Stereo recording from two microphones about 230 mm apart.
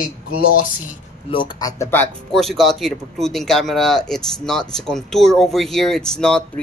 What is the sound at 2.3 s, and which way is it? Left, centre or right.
Speech, centre.